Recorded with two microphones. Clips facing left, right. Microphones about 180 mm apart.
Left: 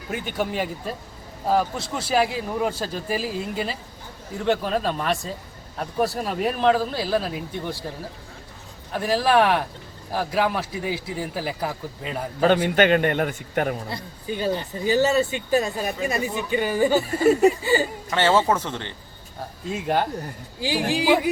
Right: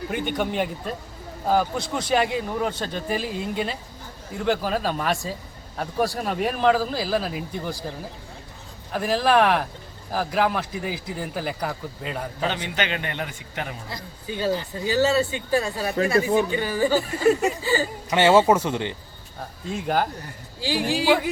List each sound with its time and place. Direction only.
0.1 s a man's voice: 5° left (ahead or behind)
8.9 s a man's voice: centre (ahead or behind)
12.4 s a man's voice: 50° left (ahead or behind)
14.3 s speech: 15° left (ahead or behind)
17.0 s a man's voice: 5° left (ahead or behind)
18.1 s speech: 15° right (ahead or behind)
19.7 s a man's voice: centre (ahead or behind)
20.6 s speech: 15° left (ahead or behind)